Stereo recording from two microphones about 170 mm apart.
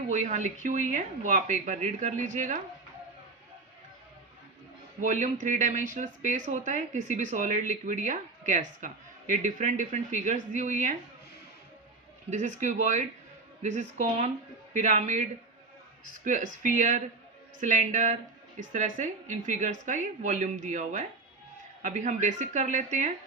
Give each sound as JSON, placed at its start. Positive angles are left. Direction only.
{"t": 0.1, "sound": "speech", "side_deg": -45}
{"t": 4.9, "sound": "speech", "side_deg": -45}
{"t": 12.3, "sound": "speech", "side_deg": -45}